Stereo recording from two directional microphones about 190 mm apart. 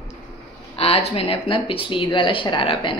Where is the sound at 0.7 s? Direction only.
30° left (ahead or behind).